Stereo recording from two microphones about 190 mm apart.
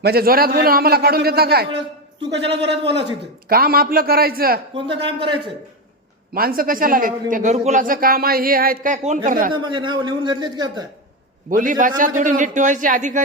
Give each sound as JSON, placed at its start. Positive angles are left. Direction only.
{"t": 0.0, "sound": "a man's voice", "side_deg": -55}
{"t": 3.5, "sound": "a man's voice", "side_deg": -50}
{"t": 4.7, "sound": "speech", "side_deg": -25}
{"t": 6.3, "sound": "a man's voice", "side_deg": -50}
{"t": 9.5, "sound": "speech", "side_deg": -25}
{"t": 11.5, "sound": "a man's voice", "side_deg": -45}